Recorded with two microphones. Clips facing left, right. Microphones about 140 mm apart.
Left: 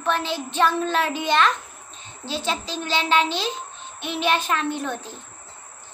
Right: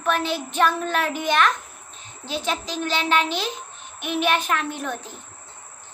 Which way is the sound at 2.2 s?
30° left (ahead or behind).